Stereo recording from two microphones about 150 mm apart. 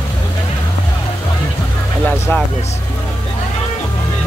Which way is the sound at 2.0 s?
15° left (ahead or behind).